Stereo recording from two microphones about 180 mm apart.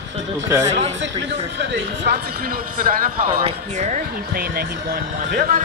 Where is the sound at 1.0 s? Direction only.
75° right (ahead or behind).